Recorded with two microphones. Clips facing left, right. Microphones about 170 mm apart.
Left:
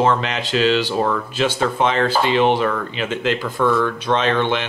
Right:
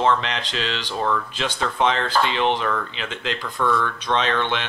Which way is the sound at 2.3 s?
45° left (ahead or behind).